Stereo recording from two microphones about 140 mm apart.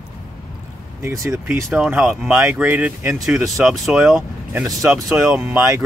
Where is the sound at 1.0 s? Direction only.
20° right (ahead or behind).